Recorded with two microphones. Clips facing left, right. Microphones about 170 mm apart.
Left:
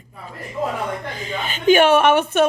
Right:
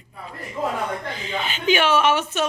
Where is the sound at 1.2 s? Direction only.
50° left (ahead or behind).